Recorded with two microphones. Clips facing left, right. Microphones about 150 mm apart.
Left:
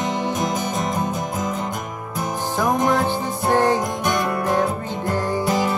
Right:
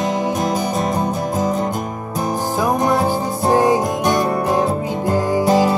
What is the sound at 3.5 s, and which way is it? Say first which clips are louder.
Music: right 3 dB; 15° right (ahead or behind).